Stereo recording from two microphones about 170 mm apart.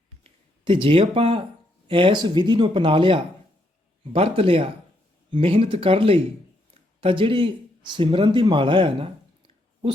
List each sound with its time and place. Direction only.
0.6 s speech: 30° right (ahead or behind)